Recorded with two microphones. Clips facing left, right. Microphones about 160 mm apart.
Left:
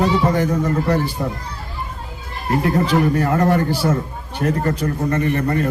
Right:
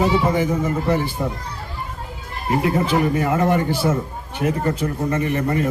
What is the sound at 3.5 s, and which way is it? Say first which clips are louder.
Speech: left 1 dB; 5° left (ahead or behind).